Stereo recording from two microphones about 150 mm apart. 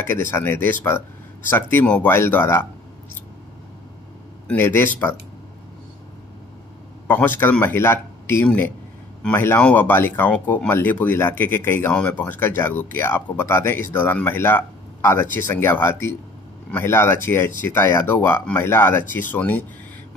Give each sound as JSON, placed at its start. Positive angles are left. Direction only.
{"t": 0.0, "sound": "speech", "side_deg": 15}
{"t": 4.5, "sound": "speech", "side_deg": 15}
{"t": 7.1, "sound": "speech", "side_deg": 15}